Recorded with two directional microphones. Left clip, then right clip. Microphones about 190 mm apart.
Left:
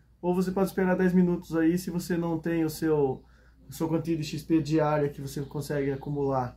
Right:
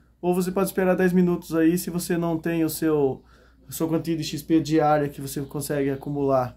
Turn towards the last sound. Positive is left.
turn(degrees=-40)  # may be behind; listen again after turning